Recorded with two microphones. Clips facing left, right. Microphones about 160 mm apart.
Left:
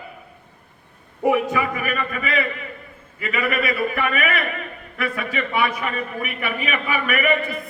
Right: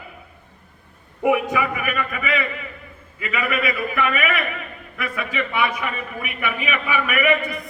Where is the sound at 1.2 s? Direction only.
35° left (ahead or behind).